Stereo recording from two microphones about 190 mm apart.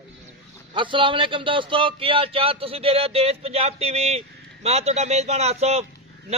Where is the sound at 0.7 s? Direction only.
25° right (ahead or behind).